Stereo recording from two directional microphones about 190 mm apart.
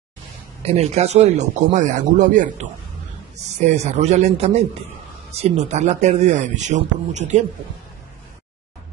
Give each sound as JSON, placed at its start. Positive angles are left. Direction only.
{"t": 0.6, "sound": "speech", "side_deg": -35}